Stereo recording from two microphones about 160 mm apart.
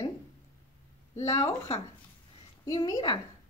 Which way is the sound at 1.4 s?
40° left (ahead or behind).